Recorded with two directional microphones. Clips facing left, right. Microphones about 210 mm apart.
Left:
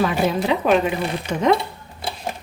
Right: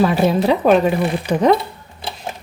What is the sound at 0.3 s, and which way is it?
Speech, 40° right (ahead or behind).